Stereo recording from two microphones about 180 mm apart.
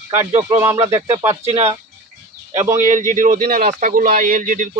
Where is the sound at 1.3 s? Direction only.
35° right (ahead or behind).